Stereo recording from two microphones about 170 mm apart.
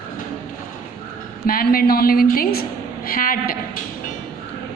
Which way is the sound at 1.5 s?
60° left (ahead or behind).